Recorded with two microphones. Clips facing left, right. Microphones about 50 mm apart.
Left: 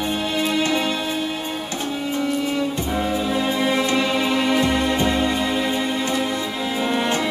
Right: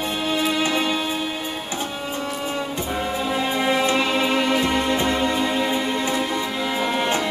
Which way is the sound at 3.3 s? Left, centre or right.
Centre.